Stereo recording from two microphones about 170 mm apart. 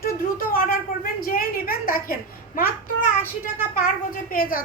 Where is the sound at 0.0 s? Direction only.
55° left (ahead or behind).